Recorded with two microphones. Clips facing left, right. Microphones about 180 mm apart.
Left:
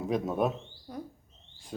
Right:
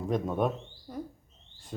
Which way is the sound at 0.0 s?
5° left (ahead or behind).